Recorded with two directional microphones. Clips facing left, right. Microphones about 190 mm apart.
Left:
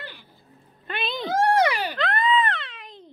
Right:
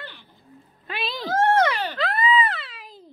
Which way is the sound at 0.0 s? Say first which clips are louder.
Even; 10° left (ahead or behind).